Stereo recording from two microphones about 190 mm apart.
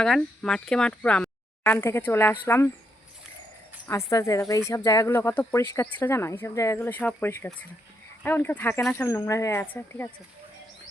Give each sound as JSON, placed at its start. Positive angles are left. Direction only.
{"t": 0.0, "sound": "speech", "side_deg": 5}
{"t": 3.8, "sound": "speech", "side_deg": 15}